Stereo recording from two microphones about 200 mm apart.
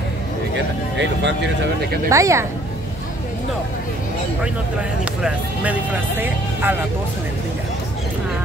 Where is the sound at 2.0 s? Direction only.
15° right (ahead or behind).